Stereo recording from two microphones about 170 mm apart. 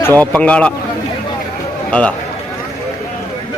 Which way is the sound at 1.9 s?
5° left (ahead or behind).